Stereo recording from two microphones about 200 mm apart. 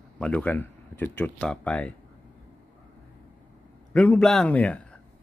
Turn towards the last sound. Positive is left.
turn(degrees=5)  # may be behind; listen again after turning